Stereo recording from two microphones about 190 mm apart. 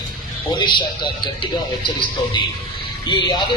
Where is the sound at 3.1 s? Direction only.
25° left (ahead or behind).